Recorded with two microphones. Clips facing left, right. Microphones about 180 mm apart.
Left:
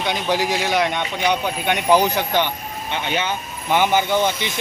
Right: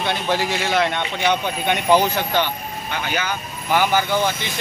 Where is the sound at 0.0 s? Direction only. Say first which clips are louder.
Left 1 dB; 15° left (ahead or behind).